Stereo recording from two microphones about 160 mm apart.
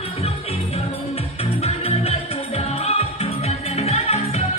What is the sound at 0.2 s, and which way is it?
Music, 40° left (ahead or behind).